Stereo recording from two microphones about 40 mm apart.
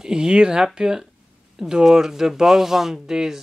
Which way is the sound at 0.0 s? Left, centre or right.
Centre.